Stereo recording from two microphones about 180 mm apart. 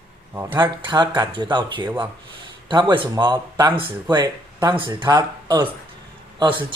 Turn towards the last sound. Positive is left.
turn(degrees=-25)  # may be behind; listen again after turning